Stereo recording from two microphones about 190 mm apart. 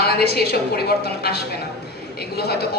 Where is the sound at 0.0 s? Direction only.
55° left (ahead or behind).